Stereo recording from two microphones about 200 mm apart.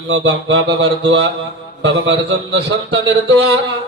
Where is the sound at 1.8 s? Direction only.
60° right (ahead or behind).